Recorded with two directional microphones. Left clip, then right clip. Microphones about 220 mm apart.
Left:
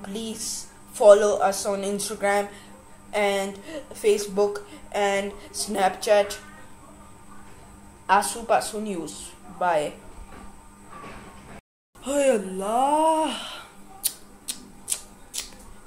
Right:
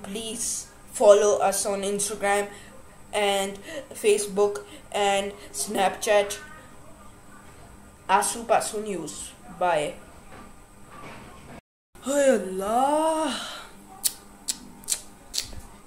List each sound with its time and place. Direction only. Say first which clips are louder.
0.0 s speech: even; 5° right (ahead or behind)
8.1 s speech: left 1 dB; 5° right (ahead or behind)
12.0 s a sound: even; centre (ahead or behind)